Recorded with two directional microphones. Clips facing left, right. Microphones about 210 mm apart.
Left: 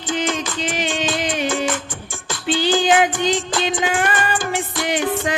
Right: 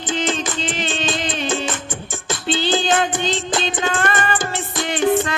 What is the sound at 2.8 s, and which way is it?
Music, 10° left (ahead or behind).